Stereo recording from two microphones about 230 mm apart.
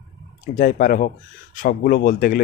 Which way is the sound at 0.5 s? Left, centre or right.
Left.